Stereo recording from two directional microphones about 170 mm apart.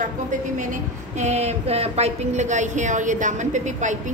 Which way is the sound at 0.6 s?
45° right (ahead or behind).